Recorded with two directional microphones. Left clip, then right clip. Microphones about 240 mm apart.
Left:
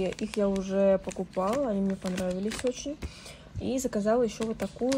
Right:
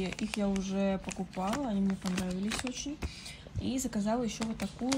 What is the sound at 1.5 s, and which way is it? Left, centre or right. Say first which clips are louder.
Speech: left 4 dB; centre.